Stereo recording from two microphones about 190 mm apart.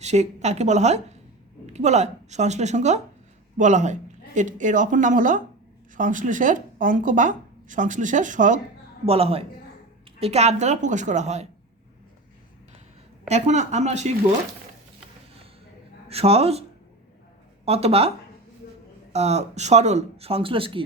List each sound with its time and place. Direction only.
0.0 s speech: 35° right (ahead or behind)
9.0 s speech: 30° right (ahead or behind)
13.2 s speech: 40° right (ahead or behind)
16.0 s speech: 30° right (ahead or behind)
17.7 s speech: 30° right (ahead or behind)
19.1 s speech: 35° right (ahead or behind)